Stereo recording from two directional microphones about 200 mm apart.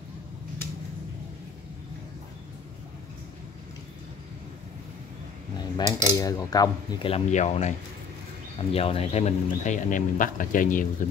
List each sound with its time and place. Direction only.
5.8 s cutlery: 20° left (ahead or behind); by 7.7 s 35° left (ahead or behind)
8.7 s speech: 30° left (ahead or behind)